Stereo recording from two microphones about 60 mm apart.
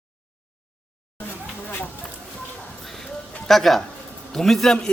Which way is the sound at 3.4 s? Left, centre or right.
Centre.